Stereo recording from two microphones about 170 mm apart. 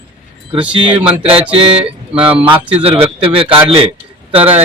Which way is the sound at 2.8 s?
35° right (ahead or behind).